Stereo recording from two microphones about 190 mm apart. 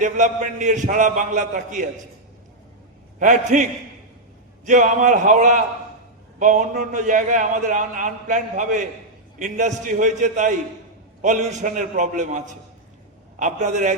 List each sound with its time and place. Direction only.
0.0 s a man's voice: 40° right (ahead or behind)
3.2 s a man's voice: 40° right (ahead or behind)